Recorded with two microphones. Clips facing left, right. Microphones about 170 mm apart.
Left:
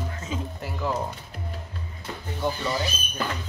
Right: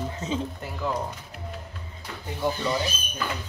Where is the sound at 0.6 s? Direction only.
5° left (ahead or behind).